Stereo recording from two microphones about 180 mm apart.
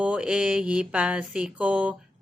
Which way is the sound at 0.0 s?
5° right (ahead or behind).